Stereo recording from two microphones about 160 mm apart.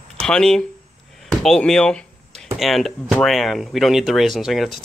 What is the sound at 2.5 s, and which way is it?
Speech, centre (ahead or behind).